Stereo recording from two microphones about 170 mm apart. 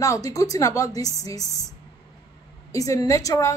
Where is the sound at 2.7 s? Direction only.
20° left (ahead or behind).